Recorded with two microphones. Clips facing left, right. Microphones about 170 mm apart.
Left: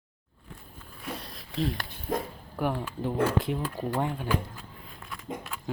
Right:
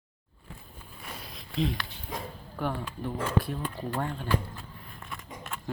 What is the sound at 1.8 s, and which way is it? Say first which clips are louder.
Dog: left 7 dB; 50° left (ahead or behind).